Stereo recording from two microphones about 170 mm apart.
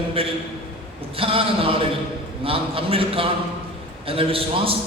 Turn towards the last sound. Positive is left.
turn(degrees=-35)  # may be behind; listen again after turning